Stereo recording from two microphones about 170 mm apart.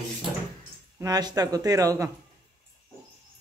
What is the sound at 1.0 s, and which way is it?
Speech, 25° right (ahead or behind).